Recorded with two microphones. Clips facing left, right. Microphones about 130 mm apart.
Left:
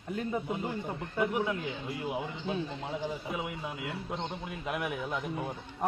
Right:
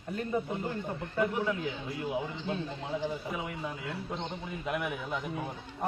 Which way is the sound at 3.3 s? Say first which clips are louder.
Even; 5° left (ahead or behind).